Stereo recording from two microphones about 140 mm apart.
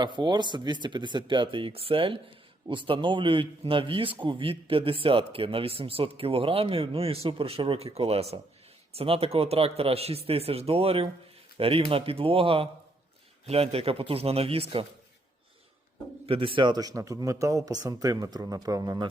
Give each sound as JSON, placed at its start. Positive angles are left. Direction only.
{"t": 0.0, "sound": "a man's voice", "side_deg": -30}
{"t": 16.2, "sound": "a man's voice", "side_deg": -40}